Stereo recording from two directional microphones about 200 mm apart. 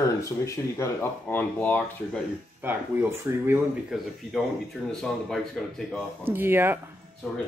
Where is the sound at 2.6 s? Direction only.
10° right (ahead or behind).